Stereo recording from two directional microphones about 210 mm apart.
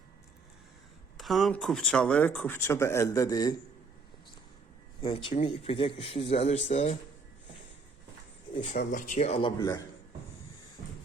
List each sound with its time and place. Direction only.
1.1 s speech: centre (ahead or behind); by 3.5 s 15° left (ahead or behind)
5.0 s speech: 25° left (ahead or behind)
8.7 s speech: 40° left (ahead or behind); by 9.8 s 15° left (ahead or behind)